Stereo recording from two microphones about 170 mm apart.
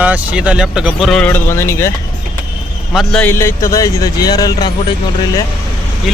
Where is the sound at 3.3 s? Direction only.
15° left (ahead or behind).